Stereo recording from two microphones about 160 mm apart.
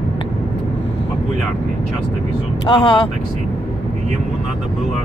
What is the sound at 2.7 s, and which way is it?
Speech, 25° left (ahead or behind).